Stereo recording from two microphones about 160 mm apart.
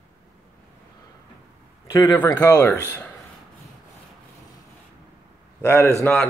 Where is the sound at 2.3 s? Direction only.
20° left (ahead or behind).